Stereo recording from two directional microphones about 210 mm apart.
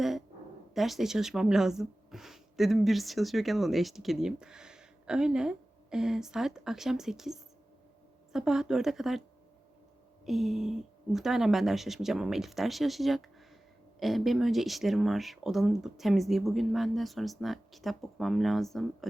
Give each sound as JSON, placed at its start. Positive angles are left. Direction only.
{"t": 0.7, "sound": "speech", "side_deg": 0}
{"t": 10.2, "sound": "speech", "side_deg": 0}